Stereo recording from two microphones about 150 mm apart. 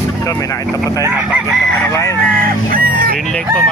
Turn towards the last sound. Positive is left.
turn(degrees=-70)  # may be behind; listen again after turning